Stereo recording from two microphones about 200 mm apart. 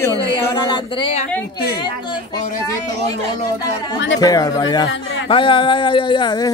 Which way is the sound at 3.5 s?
20° left (ahead or behind).